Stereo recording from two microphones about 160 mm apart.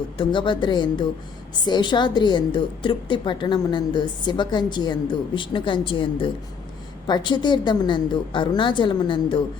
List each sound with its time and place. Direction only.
0.2 s a woman's voice: 30° left (ahead or behind)